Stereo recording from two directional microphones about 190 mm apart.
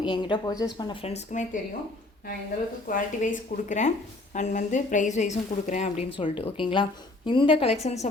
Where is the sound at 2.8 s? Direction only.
45° left (ahead or behind).